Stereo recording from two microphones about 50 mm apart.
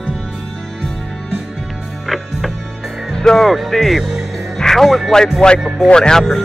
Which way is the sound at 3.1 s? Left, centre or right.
Centre.